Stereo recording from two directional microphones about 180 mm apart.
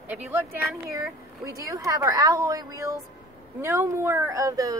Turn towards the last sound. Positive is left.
turn(degrees=-20)  # may be behind; listen again after turning